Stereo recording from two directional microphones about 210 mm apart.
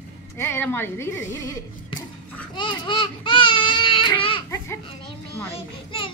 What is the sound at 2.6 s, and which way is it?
Baby cry, 25° left (ahead or behind).